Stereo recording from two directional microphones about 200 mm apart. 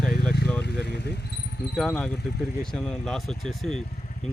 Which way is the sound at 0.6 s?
55° left (ahead or behind).